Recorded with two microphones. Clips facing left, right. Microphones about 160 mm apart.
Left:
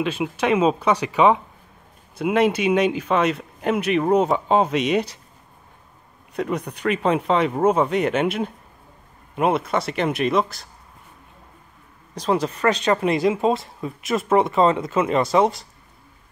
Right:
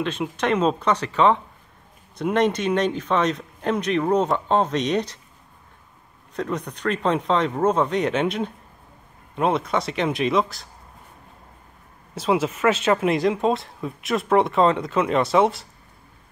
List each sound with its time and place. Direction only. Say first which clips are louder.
0.0 s speech: left 2 dB; 5° left (ahead or behind)
6.3 s speech: left 2 dB; 10° left (ahead or behind)
12.1 s speech: even; 5° right (ahead or behind)